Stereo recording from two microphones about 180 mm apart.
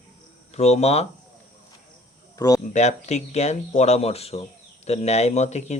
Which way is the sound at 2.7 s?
40° left (ahead or behind).